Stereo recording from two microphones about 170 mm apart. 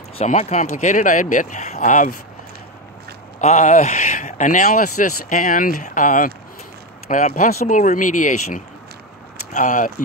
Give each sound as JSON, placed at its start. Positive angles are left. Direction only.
{"t": 0.2, "sound": "speech", "side_deg": 40}
{"t": 3.3, "sound": "speech", "side_deg": 45}